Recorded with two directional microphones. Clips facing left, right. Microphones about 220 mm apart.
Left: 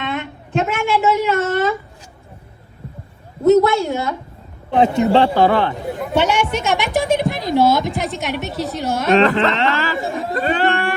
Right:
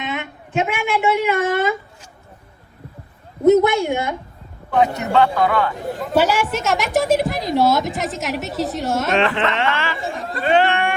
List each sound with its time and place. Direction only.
0.1 s a woman's voice: 5° right (ahead or behind)
3.4 s a man's voice: 15° right (ahead or behind)
4.7 s a man's voice: 30° left (ahead or behind)
6.0 s a woman's voice: centre (ahead or behind)
9.2 s speech: 40° left (ahead or behind)
10.3 s a sound: 45° left (ahead or behind)